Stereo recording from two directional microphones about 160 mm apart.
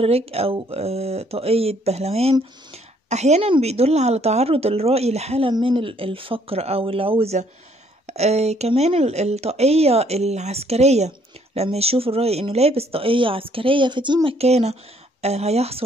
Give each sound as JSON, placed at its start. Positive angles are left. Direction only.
{"t": 0.0, "sound": "speech", "side_deg": -40}